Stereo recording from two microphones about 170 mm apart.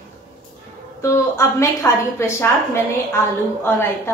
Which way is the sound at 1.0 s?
15° left (ahead or behind).